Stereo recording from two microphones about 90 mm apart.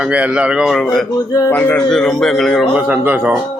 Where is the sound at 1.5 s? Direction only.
20° left (ahead or behind).